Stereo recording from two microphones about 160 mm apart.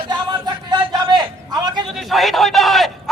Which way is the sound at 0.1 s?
25° right (ahead or behind).